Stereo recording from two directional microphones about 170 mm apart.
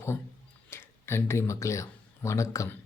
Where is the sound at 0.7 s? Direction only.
15° left (ahead or behind).